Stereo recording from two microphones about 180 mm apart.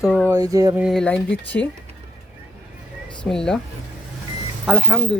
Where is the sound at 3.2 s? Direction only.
5° left (ahead or behind).